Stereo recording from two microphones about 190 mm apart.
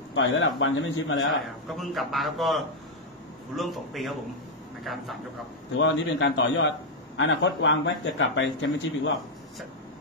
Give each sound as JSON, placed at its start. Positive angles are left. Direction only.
{"t": 0.1, "sound": "a man's voice", "side_deg": 85}
{"t": 1.7, "sound": "a man's voice", "side_deg": 0}
{"t": 5.8, "sound": "speech", "side_deg": 80}